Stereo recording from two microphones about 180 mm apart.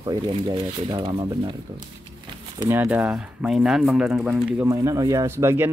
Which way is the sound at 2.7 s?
10° right (ahead or behind).